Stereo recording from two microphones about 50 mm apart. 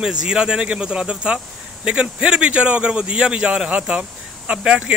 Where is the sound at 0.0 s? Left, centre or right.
Centre.